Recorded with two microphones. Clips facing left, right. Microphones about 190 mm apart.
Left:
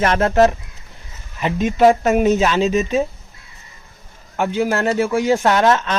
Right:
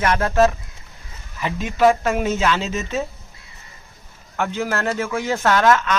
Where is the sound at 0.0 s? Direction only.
25° left (ahead or behind).